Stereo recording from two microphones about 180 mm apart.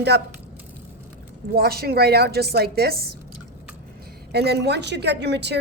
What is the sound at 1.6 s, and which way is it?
A woman's voice, 60° right (ahead or behind).